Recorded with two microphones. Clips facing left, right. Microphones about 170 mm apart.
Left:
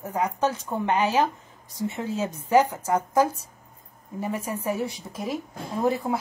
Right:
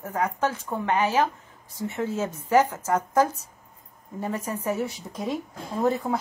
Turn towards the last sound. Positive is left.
turn(degrees=10)  # may be behind; listen again after turning